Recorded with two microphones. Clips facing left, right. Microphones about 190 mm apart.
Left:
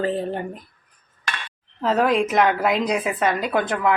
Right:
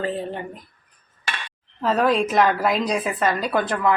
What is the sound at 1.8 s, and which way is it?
A woman's voice, 20° left (ahead or behind).